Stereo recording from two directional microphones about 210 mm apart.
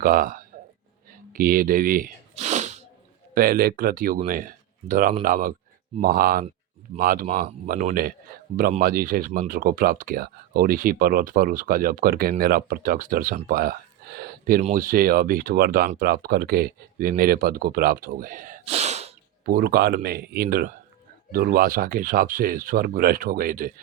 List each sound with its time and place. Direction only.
0.0 s speech: 40° right (ahead or behind)
3.3 s speech: 45° right (ahead or behind)
19.5 s speech: 45° right (ahead or behind)